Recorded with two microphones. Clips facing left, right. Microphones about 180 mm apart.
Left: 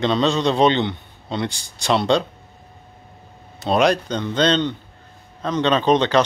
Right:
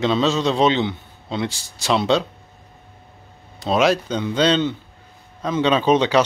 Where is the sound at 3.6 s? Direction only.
Centre (ahead or behind).